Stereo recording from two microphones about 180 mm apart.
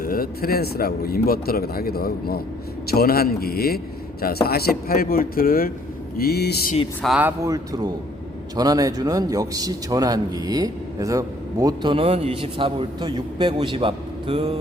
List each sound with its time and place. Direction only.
0.0 s speech: 55° left (ahead or behind)
7.0 s a man's voice: 5° right (ahead or behind); by 14.6 s 30° right (ahead or behind)